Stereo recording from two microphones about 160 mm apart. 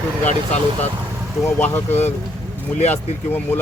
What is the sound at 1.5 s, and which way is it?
Speech, 10° left (ahead or behind).